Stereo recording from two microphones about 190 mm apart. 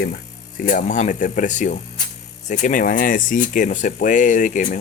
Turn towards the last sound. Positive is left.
turn(degrees=40)  # may be behind; listen again after turning